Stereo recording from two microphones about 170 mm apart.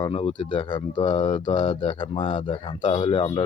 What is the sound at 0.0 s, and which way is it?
Speech, 30° left (ahead or behind).